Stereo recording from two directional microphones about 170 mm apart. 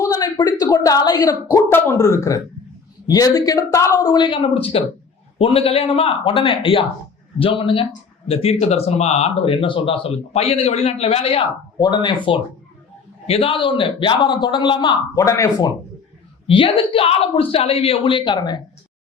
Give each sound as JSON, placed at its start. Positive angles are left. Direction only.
{"t": 0.0, "sound": "a sound", "side_deg": 20}
{"t": 0.6, "sound": "a man's voice", "side_deg": 20}
{"t": 16.5, "sound": "speech", "side_deg": 30}